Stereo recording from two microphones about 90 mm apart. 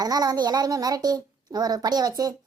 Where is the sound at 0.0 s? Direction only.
45° right (ahead or behind).